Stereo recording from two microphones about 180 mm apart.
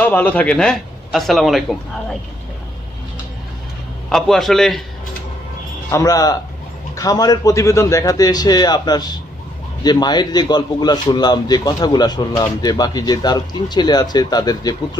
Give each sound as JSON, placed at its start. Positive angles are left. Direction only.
{"t": 0.0, "sound": "speech", "side_deg": 10}
{"t": 4.1, "sound": "speech", "side_deg": 0}
{"t": 5.9, "sound": "a man's voice", "side_deg": 20}